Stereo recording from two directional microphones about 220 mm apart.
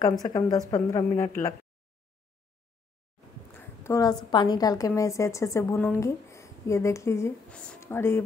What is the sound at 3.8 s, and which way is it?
A woman's voice, 15° left (ahead or behind).